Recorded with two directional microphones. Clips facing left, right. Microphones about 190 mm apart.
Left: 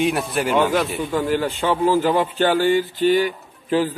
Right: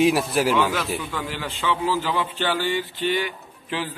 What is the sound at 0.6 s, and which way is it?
A man's voice, 45° left (ahead or behind).